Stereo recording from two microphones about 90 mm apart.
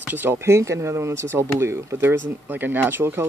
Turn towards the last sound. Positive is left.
turn(degrees=-25)  # may be behind; listen again after turning